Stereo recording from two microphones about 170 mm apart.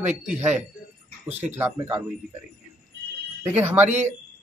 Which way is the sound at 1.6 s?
10° right (ahead or behind).